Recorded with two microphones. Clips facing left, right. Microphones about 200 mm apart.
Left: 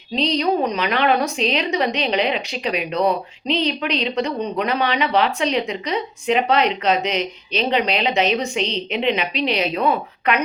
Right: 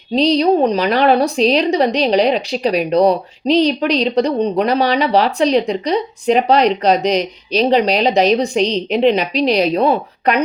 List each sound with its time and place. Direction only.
0.2 s a woman's voice: 35° right (ahead or behind)